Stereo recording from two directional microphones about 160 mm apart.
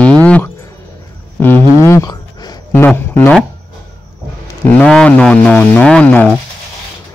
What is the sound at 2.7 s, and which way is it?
Speech, 15° left (ahead or behind).